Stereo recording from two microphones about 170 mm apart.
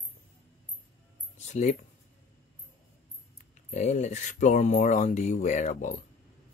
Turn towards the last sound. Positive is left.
turn(degrees=45)  # may be behind; listen again after turning